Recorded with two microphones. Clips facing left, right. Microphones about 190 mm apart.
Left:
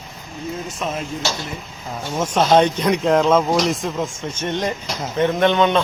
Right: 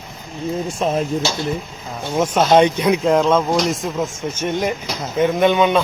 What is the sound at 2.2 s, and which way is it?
Speech, 10° right (ahead or behind).